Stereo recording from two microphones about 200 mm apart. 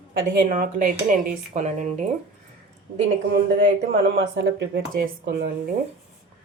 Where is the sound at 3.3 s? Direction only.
50° right (ahead or behind).